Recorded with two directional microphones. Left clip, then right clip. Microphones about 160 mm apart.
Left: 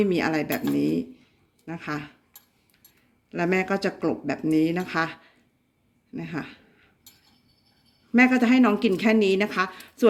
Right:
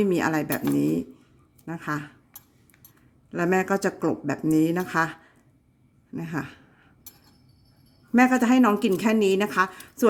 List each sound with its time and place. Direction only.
0.0 s speech: 60° right (ahead or behind)
3.2 s speech: 60° right (ahead or behind)
6.1 s speech: 65° right (ahead or behind)
8.1 s speech: 60° right (ahead or behind)
9.8 s a sound: 65° right (ahead or behind)